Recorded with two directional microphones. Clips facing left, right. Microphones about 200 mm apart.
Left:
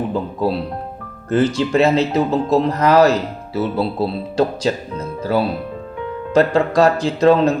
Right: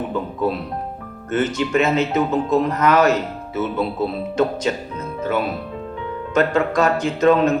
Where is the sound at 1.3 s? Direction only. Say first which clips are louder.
Left 3 dB; 35° left (ahead or behind).